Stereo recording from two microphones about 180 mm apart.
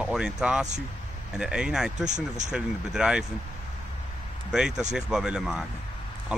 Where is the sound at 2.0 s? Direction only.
40° right (ahead or behind).